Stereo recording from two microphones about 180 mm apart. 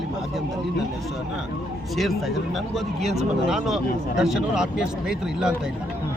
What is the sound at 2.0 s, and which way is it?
Speech, centre (ahead or behind).